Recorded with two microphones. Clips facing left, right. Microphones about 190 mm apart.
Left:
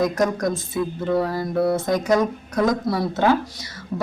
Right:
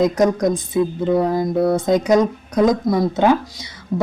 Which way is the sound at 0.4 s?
20° right (ahead or behind).